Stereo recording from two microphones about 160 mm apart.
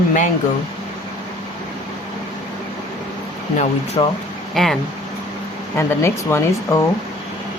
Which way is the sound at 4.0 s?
30° left (ahead or behind).